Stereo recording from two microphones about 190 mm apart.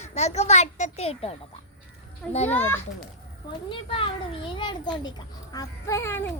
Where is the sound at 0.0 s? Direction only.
35° left (ahead or behind).